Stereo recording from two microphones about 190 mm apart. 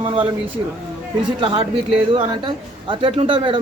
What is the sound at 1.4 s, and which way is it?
Speech, 25° right (ahead or behind).